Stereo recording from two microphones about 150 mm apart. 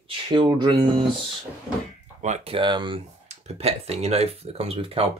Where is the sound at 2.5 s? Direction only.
30° right (ahead or behind).